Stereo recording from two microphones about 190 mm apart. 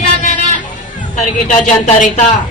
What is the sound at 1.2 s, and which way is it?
A man's voice, 40° left (ahead or behind).